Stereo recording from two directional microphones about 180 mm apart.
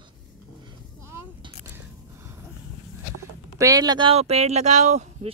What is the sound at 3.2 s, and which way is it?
Speech, 15° right (ahead or behind).